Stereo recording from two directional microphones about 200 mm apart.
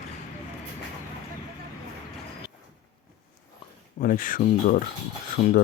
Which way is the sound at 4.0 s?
45° left (ahead or behind).